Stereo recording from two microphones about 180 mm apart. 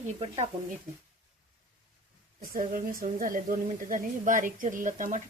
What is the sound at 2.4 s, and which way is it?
Speech, 50° right (ahead or behind).